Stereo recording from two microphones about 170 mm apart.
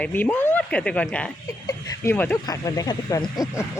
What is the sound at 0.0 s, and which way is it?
Speech, 10° left (ahead or behind).